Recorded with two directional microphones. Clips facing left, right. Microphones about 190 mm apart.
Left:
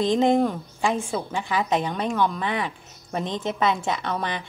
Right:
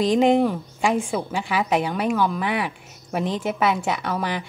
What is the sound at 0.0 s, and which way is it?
A woman's voice, 15° right (ahead or behind).